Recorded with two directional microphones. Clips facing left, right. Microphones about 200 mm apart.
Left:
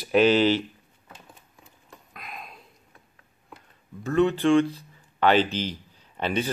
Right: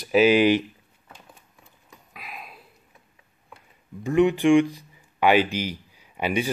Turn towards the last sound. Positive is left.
turn(degrees=-10)  # may be behind; listen again after turning